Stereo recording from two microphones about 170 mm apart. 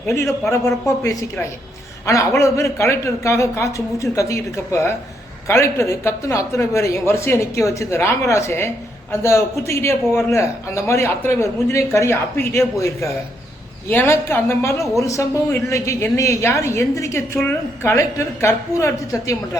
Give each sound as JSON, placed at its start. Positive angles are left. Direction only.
{"t": 0.0, "sound": "a woman's voice", "side_deg": 15}